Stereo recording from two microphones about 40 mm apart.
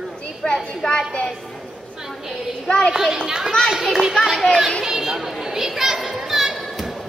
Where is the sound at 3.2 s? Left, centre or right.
Centre.